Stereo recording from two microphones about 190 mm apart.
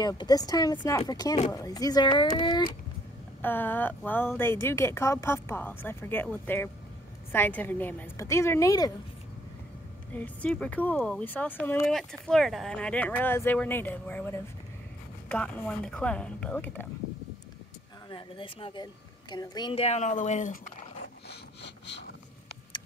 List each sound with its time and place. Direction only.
0.0 s speech: 20° left (ahead or behind)
3.4 s speech: 10° left (ahead or behind)
10.1 s speech: 5° left (ahead or behind)
18.1 s speech: 30° left (ahead or behind)
21.3 s wood: 65° left (ahead or behind)